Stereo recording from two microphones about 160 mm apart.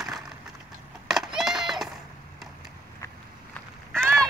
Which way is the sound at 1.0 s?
Centre (ahead or behind).